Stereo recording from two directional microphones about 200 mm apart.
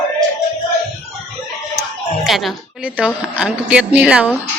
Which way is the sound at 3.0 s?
5° right (ahead or behind).